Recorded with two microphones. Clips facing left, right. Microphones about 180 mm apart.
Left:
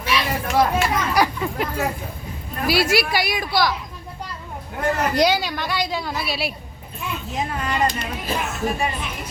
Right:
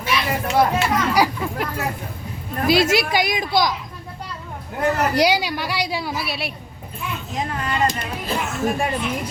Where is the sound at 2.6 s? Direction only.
20° right (ahead or behind).